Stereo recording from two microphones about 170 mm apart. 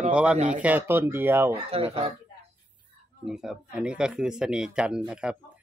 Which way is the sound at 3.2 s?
5° right (ahead or behind).